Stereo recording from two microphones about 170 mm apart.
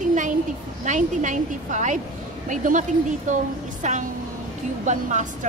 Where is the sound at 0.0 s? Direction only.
50° right (ahead or behind).